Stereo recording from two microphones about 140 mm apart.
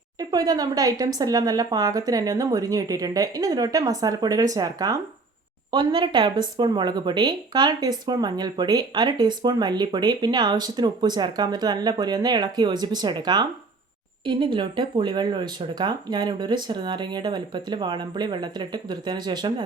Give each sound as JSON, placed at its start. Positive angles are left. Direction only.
{"t": 0.2, "sound": "speech", "side_deg": -25}